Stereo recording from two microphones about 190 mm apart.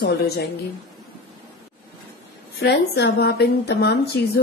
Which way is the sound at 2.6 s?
60° left (ahead or behind).